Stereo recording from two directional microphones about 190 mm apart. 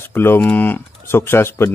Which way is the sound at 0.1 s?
10° left (ahead or behind).